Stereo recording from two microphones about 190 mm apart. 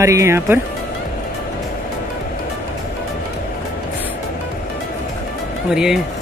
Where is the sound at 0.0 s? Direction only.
15° right (ahead or behind).